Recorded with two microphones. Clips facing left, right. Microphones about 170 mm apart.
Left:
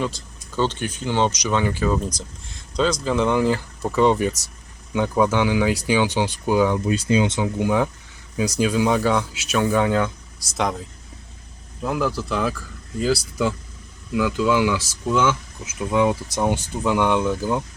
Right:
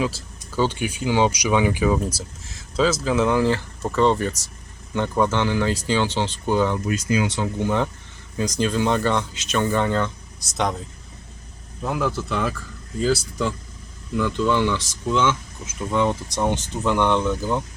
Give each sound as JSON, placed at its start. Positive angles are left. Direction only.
{"t": 0.0, "sound": "speech", "side_deg": -5}
{"t": 6.8, "sound": "speech", "side_deg": 25}
{"t": 7.4, "sound": "speech", "side_deg": 5}
{"t": 14.1, "sound": "speech", "side_deg": 5}